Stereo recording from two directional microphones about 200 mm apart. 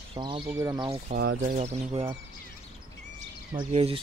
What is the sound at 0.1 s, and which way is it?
Speech, 25° right (ahead or behind).